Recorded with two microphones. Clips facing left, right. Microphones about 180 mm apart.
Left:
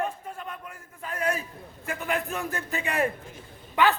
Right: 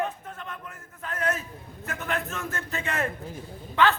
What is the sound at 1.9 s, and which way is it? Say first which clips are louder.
A man's voice: left 2 dB; 10° left (ahead or behind).